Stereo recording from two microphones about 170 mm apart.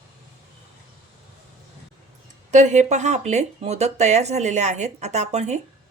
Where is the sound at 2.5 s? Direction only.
45° right (ahead or behind).